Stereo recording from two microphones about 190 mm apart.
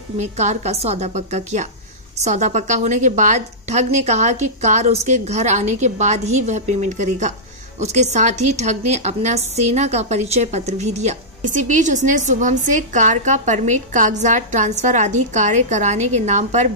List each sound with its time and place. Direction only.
0.2 s a woman's voice: 40° right (ahead or behind)